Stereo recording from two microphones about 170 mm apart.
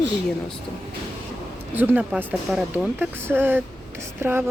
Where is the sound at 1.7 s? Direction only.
10° right (ahead or behind).